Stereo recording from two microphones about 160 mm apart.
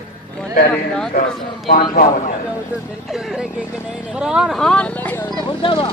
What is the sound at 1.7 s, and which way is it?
Speech, 65° left (ahead or behind).